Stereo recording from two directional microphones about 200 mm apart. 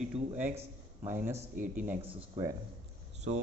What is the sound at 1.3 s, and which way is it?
Speech, 40° right (ahead or behind).